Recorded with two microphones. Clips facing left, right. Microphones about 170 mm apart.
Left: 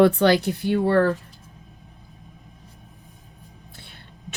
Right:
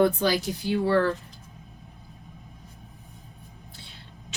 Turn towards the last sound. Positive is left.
turn(degrees=55)  # may be behind; listen again after turning